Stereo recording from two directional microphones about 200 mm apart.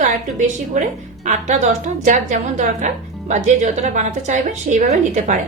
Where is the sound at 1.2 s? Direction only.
35° right (ahead or behind).